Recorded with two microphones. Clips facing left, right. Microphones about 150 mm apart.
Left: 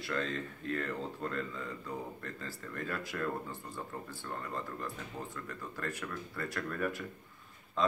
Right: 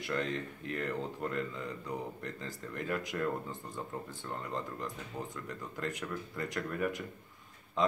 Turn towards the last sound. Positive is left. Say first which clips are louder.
# right 1 dB
turn(degrees=-20)  # may be behind; listen again after turning